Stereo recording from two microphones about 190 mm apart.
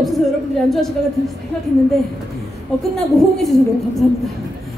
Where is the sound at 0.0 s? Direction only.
Centre (ahead or behind).